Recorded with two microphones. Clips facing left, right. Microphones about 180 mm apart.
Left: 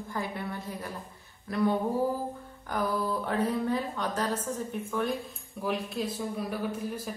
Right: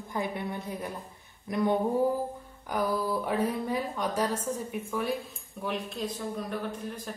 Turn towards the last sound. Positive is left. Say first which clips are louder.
# left 3 dB
turn(degrees=5)  # may be behind; listen again after turning